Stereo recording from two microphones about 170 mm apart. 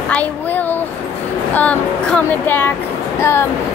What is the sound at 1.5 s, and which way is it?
Speech, 10° left (ahead or behind).